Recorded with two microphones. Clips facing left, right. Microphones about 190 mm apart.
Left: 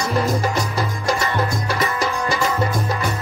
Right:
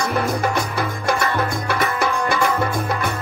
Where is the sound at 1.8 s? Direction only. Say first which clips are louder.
Right 2 dB; 60° right (ahead or behind).